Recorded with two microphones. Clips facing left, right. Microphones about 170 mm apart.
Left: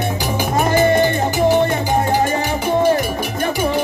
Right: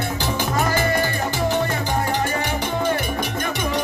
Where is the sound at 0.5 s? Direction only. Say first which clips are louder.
Left 8 dB; 20° left (ahead or behind).